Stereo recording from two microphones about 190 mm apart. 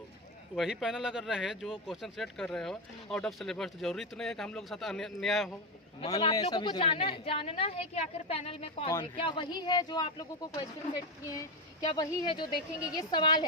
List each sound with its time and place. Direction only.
0.5 s speech: centre (ahead or behind)
6.1 s speech: 20° left (ahead or behind)